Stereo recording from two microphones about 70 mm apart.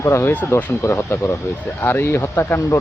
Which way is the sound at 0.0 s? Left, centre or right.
Left.